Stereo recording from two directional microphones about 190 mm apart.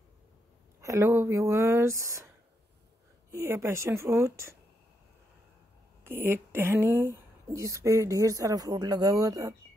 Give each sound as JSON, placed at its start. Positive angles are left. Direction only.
{"t": 0.7, "sound": "speech", "side_deg": -15}
{"t": 6.0, "sound": "speech", "side_deg": -10}